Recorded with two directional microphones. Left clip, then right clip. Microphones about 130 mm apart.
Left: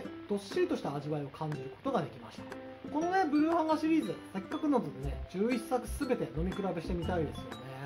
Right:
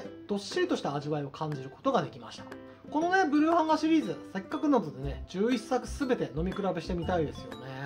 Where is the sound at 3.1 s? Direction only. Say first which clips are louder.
Right 4 dB; 25° right (ahead or behind).